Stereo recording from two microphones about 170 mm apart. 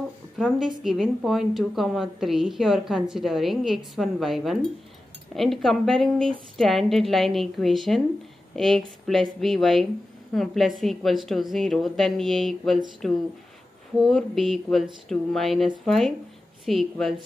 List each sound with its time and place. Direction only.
0.4 s a woman's voice: centre (ahead or behind)